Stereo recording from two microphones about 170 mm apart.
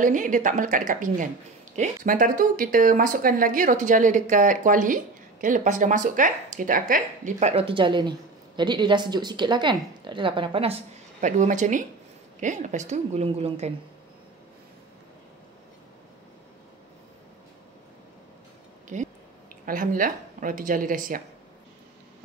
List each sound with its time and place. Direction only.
0.0 s a woman's voice: 50° right (ahead or behind)
18.9 s speech: 45° right (ahead or behind)